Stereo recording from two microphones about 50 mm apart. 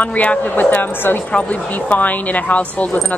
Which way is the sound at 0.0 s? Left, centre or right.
Left.